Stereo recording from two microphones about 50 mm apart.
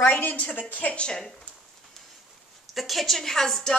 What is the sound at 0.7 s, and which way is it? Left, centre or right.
Speech, left.